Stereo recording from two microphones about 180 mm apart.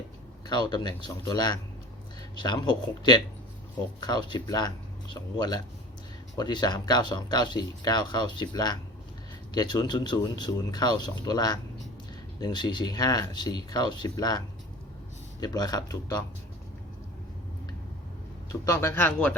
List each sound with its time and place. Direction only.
0.4 s speech: 25° left (ahead or behind)
18.6 s speech: 15° left (ahead or behind)